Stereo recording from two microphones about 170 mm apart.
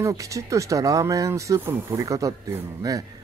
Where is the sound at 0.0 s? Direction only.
20° right (ahead or behind).